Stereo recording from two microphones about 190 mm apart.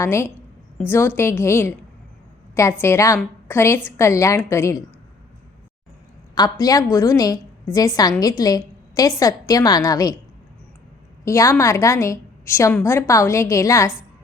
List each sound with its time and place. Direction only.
0.0 s a woman's voice: 15° left (ahead or behind)
6.3 s a woman's voice: 20° left (ahead or behind)
11.3 s a woman's voice: 15° left (ahead or behind)